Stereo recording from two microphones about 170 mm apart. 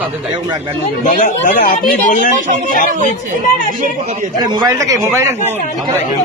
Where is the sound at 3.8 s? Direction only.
50° right (ahead or behind).